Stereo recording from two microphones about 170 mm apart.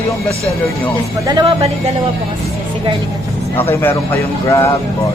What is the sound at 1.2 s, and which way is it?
Speech, 25° right (ahead or behind).